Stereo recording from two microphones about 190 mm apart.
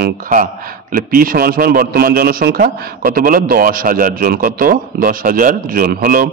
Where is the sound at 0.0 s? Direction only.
45° right (ahead or behind).